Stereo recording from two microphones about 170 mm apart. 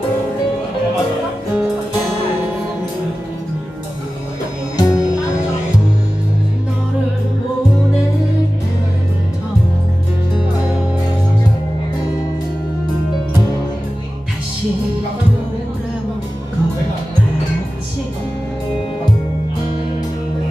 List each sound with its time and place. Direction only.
4.7 s music: 20° left (ahead or behind)